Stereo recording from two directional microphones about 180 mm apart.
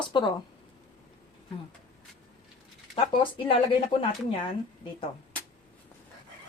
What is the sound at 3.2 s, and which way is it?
Speech, 30° left (ahead or behind).